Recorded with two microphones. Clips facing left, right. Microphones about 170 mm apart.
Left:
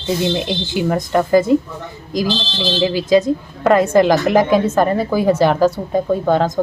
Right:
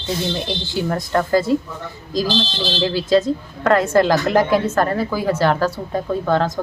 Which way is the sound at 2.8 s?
15° left (ahead or behind).